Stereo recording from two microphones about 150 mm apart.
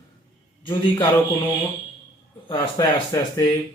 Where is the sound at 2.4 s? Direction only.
30° left (ahead or behind).